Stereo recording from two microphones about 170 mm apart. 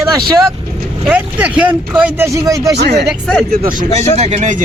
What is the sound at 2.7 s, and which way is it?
Speech, 75° right (ahead or behind).